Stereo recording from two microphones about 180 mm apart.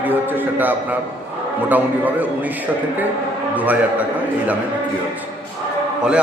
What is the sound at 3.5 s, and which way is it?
Speech, 10° right (ahead or behind).